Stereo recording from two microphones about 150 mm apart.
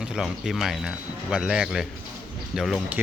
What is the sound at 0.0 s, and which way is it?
Speech, 5° right (ahead or behind).